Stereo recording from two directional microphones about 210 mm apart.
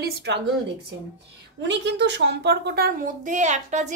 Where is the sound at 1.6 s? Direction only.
55° right (ahead or behind).